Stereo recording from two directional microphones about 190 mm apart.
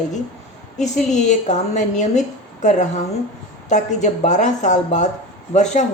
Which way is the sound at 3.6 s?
40° left (ahead or behind).